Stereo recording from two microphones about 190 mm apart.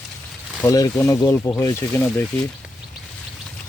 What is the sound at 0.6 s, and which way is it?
Speech, 20° left (ahead or behind).